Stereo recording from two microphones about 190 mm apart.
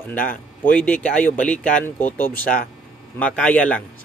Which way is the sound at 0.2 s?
45° left (ahead or behind).